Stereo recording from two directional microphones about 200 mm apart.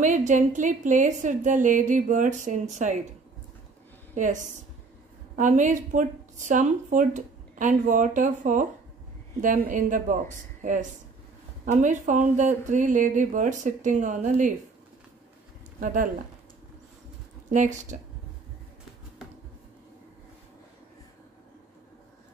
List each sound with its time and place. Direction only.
0.0 s speech: 40° right (ahead or behind)
4.1 s a woman's voice: 40° right (ahead or behind)
15.8 s speech: 40° right (ahead or behind)
17.5 s speech: 40° right (ahead or behind)